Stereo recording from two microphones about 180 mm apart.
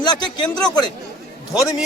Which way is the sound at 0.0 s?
25° left (ahead or behind).